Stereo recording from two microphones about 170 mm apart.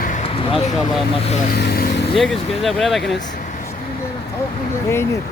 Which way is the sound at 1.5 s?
70° left (ahead or behind).